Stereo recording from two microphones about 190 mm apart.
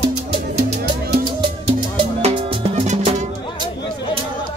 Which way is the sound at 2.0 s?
30° right (ahead or behind).